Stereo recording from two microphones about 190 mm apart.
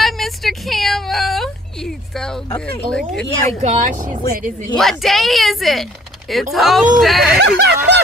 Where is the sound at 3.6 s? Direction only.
40° right (ahead or behind).